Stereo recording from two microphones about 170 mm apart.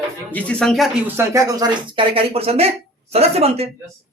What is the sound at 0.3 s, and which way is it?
Speech, 5° left (ahead or behind).